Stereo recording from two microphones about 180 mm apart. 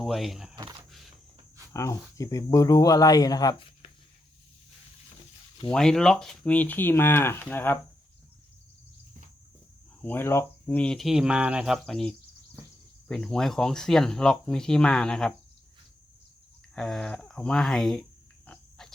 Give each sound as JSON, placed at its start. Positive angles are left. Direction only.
{"t": 0.0, "sound": "speech", "side_deg": 0}
{"t": 0.5, "sound": "a sound", "side_deg": -25}
{"t": 1.7, "sound": "speech", "side_deg": 15}
{"t": 5.7, "sound": "speech", "side_deg": 5}
{"t": 10.0, "sound": "speech", "side_deg": 10}
{"t": 16.7, "sound": "speech", "side_deg": 0}
{"t": 18.4, "sound": "a sound", "side_deg": 5}